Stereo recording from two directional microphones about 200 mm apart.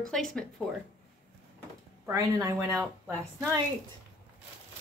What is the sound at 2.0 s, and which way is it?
A woman's voice, 15° right (ahead or behind).